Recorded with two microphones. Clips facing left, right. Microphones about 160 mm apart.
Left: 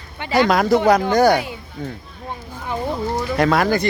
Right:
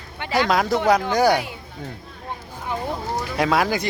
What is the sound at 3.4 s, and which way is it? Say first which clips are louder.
Speech: left 3 dB; 5° right (ahead or behind).